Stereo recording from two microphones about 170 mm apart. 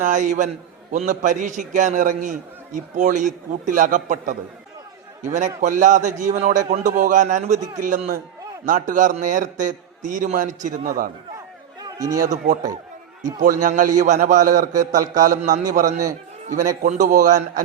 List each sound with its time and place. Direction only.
0.0 s a man's voice: 50° right (ahead or behind)
5.5 s a man's voice: 45° right (ahead or behind)
11.8 s chatter: 20° right (ahead or behind)
12.2 s a man's voice: 45° right (ahead or behind)